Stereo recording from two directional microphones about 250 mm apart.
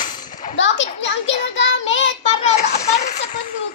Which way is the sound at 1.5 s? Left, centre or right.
Left.